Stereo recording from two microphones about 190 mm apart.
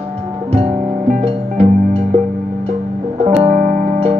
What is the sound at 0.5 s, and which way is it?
Music, 30° right (ahead or behind).